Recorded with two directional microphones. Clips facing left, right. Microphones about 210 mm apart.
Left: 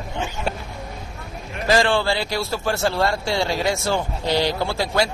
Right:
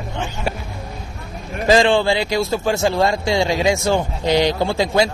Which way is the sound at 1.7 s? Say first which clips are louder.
Right 4 dB; 20° right (ahead or behind).